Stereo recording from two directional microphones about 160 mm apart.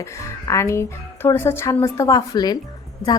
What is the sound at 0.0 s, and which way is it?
A woman's voice, 20° left (ahead or behind).